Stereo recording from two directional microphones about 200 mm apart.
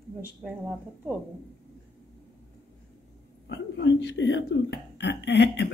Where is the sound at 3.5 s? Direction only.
60° left (ahead or behind).